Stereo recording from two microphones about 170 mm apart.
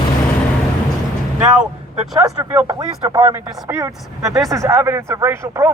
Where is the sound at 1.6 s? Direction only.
5° right (ahead or behind).